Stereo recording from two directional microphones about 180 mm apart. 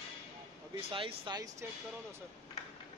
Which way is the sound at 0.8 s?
30° right (ahead or behind).